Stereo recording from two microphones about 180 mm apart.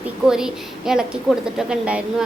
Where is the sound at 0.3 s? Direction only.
5° right (ahead or behind).